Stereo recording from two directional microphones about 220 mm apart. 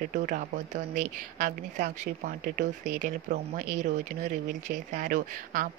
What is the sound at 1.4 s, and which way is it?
Speech, 35° right (ahead or behind).